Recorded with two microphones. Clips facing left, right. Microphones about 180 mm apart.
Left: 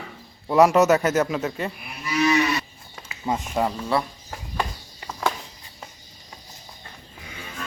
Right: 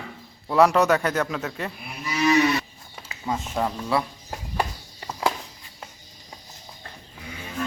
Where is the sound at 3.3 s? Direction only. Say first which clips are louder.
Left 2 dB; 25° left (ahead or behind).